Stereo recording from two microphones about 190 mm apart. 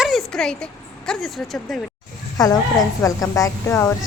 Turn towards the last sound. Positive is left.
turn(degrees=15)  # may be behind; listen again after turning